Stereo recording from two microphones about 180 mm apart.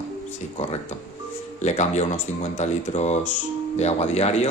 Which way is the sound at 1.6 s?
40° left (ahead or behind).